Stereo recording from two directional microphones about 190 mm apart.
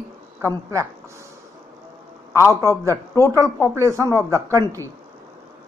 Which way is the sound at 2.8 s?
15° left (ahead or behind).